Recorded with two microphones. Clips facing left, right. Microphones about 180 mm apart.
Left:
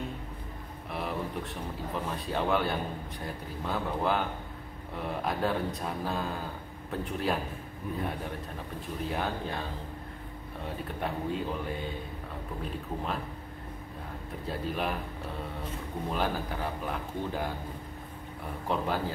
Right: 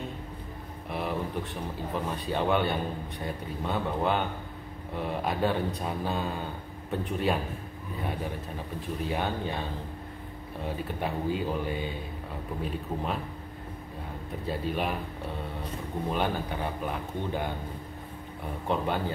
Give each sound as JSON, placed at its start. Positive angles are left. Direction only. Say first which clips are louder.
{"t": 0.8, "sound": "a sound", "louder": "right 2 dB", "side_deg": 0}
{"t": 2.1, "sound": "a man's voice", "louder": "right 2 dB", "side_deg": 0}
{"t": 11.0, "sound": "a man's voice", "louder": "right 2 dB", "side_deg": 0}
{"t": 14.4, "sound": "a man's voice", "louder": "right 2 dB", "side_deg": 0}
{"t": 16.1, "sound": "a man's voice", "louder": "right 2 dB", "side_deg": 0}
{"t": 18.7, "sound": "a man's voice", "louder": "right 2 dB", "side_deg": 0}